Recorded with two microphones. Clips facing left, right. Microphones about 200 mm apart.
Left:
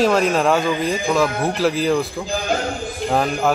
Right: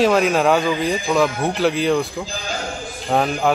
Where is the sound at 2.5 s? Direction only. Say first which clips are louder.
Left 7 dB; 60° left (ahead or behind).